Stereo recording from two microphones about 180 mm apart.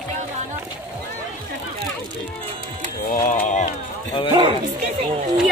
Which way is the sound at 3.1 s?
50° left (ahead or behind).